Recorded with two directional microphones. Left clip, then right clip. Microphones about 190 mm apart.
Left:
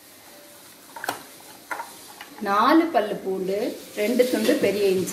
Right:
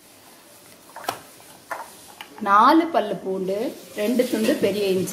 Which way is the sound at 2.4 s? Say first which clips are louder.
Right 3 dB; 35° right (ahead or behind).